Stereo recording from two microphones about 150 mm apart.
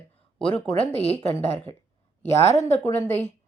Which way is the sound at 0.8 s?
45° left (ahead or behind).